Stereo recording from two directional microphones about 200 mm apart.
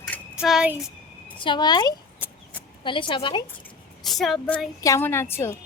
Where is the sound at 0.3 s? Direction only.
5° right (ahead or behind).